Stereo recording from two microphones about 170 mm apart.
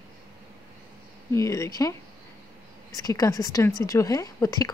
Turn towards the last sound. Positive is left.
turn(degrees=20)  # may be behind; listen again after turning